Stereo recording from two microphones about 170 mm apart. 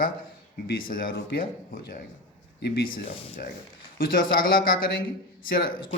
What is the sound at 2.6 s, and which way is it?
Speech, 75° left (ahead or behind).